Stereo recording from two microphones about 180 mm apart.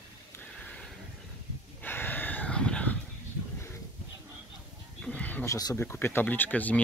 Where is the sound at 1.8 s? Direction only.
10° left (ahead or behind).